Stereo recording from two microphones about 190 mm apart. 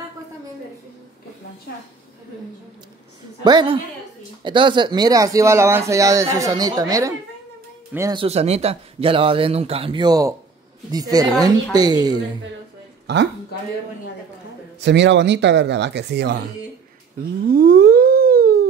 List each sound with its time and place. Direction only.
3.4 s a man's voice: 25° right (ahead or behind)
8.2 s a man's voice: 35° right (ahead or behind)
13.0 s speech: 65° right (ahead or behind)
14.8 s speech: 65° right (ahead or behind)
17.5 s theremin: 50° right (ahead or behind)